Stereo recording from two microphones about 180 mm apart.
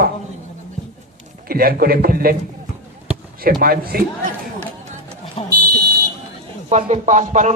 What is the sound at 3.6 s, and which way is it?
Speech, 55° right (ahead or behind).